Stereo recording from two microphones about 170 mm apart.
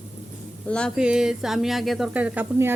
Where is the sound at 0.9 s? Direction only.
5° right (ahead or behind).